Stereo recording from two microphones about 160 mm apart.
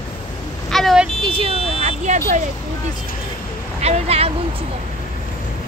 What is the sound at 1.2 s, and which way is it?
Speech, 35° right (ahead or behind).